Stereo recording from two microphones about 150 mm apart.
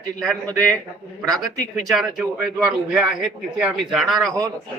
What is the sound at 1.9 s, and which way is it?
Speech, centre (ahead or behind).